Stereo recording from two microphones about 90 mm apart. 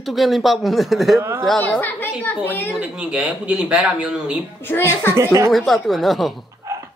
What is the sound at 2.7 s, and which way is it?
A man's voice, 10° right (ahead or behind).